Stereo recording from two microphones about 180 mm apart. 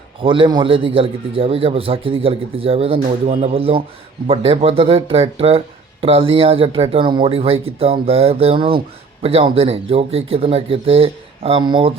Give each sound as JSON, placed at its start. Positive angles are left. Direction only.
{"t": 0.2, "sound": "speech", "side_deg": -30}